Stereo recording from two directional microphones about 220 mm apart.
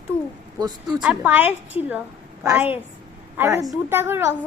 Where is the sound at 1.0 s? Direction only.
10° right (ahead or behind).